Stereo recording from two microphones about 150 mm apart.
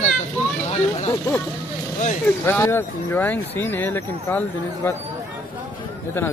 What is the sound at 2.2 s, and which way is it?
Speech, 15° left (ahead or behind).